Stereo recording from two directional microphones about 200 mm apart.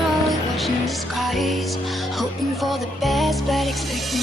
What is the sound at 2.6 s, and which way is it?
Music, centre (ahead or behind).